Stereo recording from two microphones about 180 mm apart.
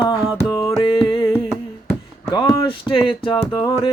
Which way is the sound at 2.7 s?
30° left (ahead or behind).